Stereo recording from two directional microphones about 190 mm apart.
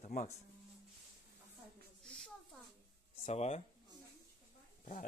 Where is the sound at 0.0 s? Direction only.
40° left (ahead or behind).